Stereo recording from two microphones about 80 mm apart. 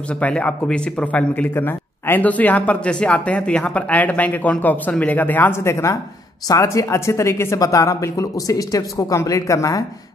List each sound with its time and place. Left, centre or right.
0.2 s speech: centre; by 9.8 s left